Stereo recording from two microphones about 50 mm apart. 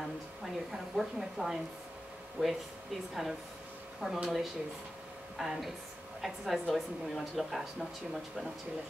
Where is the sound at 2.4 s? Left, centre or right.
Centre.